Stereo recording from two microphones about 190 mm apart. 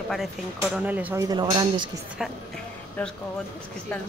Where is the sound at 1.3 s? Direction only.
20° right (ahead or behind).